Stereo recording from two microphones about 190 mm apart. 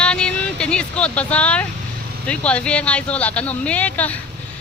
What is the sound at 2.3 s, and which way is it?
Speech, 5° left (ahead or behind).